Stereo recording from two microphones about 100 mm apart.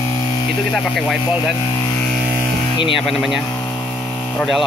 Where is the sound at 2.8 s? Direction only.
60° left (ahead or behind).